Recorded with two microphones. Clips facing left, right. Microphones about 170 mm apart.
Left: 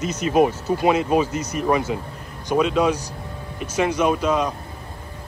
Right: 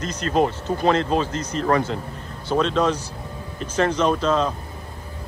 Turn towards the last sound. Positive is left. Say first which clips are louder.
# even
turn(degrees=10)  # may be behind; listen again after turning